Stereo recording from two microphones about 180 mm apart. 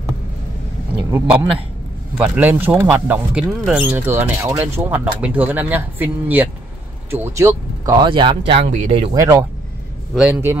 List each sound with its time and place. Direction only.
2.1 s speech: 10° right (ahead or behind); by 9.1 s 35° right (ahead or behind)
9.1 s speech: 15° right (ahead or behind)
10.1 s speech: 5° right (ahead or behind)